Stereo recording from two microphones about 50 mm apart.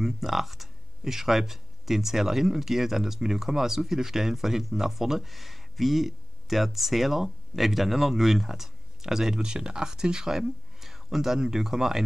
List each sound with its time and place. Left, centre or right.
0.0 s speech: centre